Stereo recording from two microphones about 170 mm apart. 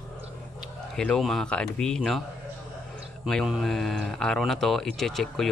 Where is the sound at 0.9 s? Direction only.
5° left (ahead or behind).